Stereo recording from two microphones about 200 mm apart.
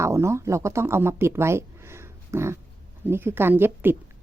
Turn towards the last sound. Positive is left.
turn(degrees=-10)  # may be behind; listen again after turning